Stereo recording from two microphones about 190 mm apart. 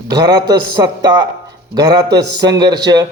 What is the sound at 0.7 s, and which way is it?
A man's voice, 20° right (ahead or behind).